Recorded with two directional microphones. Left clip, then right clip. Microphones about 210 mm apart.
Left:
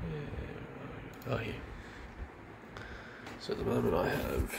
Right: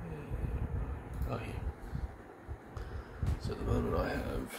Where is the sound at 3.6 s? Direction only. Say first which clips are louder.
Left 4 dB; 20° left (ahead or behind).